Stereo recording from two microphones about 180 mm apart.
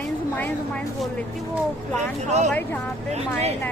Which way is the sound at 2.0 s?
40° right (ahead or behind).